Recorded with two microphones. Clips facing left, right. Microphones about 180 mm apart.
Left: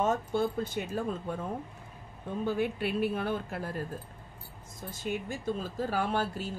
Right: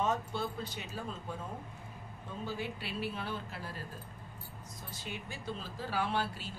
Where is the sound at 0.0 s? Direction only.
50° left (ahead or behind).